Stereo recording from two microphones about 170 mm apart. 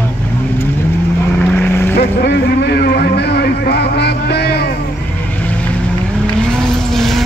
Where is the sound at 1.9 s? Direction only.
80° left.